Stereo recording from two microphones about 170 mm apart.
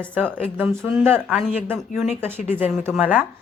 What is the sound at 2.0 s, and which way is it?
Speech, 40° left (ahead or behind).